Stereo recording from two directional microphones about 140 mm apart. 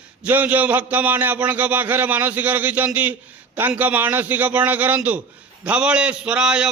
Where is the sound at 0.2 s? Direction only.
10° right (ahead or behind).